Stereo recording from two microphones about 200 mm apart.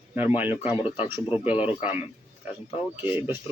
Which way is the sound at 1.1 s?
10° right (ahead or behind).